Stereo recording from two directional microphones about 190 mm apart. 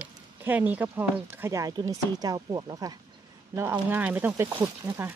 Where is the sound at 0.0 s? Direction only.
10° right (ahead or behind).